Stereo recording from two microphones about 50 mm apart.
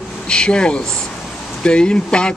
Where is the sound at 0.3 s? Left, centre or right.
Centre.